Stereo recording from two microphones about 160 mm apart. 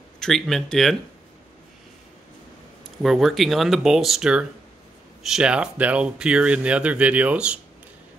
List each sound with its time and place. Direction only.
0.2 s speech: centre (ahead or behind)
3.0 s speech: centre (ahead or behind)